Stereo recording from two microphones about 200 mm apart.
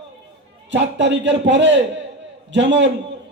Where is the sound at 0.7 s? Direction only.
65° right (ahead or behind).